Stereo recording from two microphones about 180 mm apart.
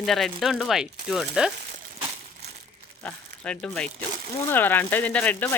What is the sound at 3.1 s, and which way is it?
Speech, 5° left (ahead or behind).